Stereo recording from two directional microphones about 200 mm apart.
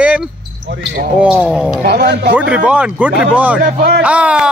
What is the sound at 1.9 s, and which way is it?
Speech, 55° right (ahead or behind).